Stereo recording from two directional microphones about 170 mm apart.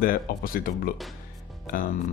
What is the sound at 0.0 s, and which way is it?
Speech, 55° left (ahead or behind).